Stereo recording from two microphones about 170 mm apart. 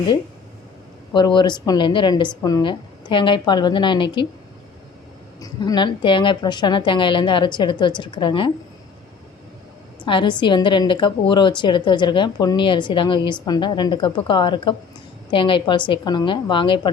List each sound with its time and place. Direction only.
1.1 s a woman's voice: 25° left (ahead or behind)
5.4 s a woman's voice: 25° left (ahead or behind)
10.1 s a woman's voice: 30° left (ahead or behind)